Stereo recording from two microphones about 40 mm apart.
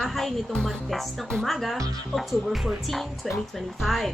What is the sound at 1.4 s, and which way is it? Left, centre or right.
Speech, centre.